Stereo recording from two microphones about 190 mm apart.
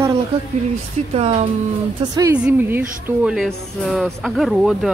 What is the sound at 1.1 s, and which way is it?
Speech, 35° right (ahead or behind).